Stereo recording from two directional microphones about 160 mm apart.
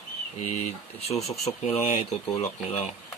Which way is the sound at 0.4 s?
45° left (ahead or behind).